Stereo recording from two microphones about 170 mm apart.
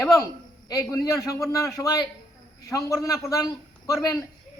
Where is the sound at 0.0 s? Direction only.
20° left (ahead or behind).